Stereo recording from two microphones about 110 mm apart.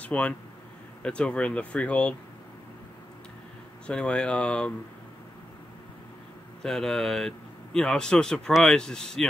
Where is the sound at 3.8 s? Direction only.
10° left (ahead or behind).